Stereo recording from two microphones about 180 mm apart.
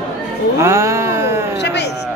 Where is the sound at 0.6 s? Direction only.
15° right (ahead or behind).